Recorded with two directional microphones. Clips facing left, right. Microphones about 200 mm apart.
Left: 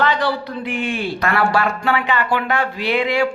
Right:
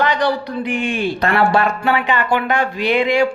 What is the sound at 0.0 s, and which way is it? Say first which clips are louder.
A man's voice: right 2 dB; 15° right (ahead or behind).